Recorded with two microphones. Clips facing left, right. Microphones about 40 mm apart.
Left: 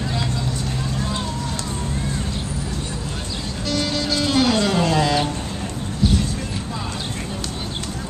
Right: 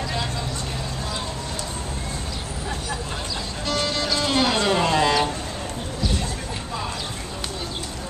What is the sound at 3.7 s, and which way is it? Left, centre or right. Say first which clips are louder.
Music: left 1 dB; centre.